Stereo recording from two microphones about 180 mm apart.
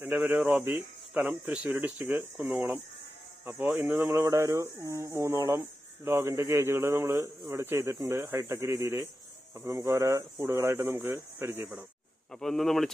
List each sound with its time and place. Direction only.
0.1 s a man's voice: 5° right (ahead or behind)
4.1 s a man's voice: 15° right (ahead or behind)
12.4 s speech: centre (ahead or behind)